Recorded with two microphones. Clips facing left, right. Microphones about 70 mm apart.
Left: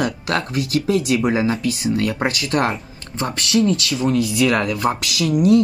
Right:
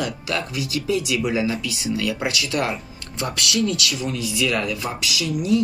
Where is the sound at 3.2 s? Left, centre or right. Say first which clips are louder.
Left 5 dB; left.